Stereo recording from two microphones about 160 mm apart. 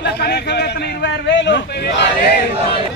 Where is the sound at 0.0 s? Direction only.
85° left.